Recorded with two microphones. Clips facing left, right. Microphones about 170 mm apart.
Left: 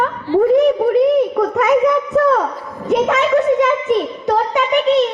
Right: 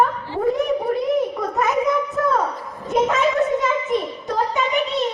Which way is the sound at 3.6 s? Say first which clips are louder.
Left 6 dB; 80° left.